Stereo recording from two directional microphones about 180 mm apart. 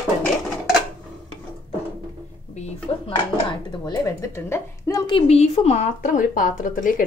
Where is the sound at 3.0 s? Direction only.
25° left (ahead or behind); by 7.0 s 50° left (ahead or behind).